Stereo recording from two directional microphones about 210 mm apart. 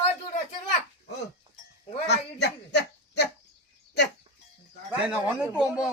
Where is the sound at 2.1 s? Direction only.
55° left (ahead or behind).